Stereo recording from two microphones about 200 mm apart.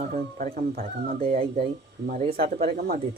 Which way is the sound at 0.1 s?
45° right (ahead or behind).